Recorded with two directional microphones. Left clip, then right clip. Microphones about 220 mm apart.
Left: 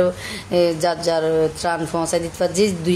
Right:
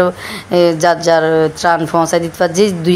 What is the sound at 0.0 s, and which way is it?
Speech, 20° right (ahead or behind).